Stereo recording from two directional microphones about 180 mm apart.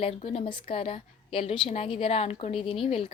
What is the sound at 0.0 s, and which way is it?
Speech, 35° left (ahead or behind).